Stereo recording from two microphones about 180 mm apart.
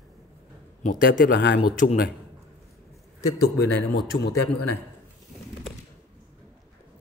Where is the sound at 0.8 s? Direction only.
50° left (ahead or behind).